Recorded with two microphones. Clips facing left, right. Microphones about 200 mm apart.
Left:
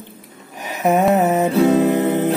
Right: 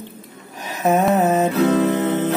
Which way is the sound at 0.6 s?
15° left (ahead or behind).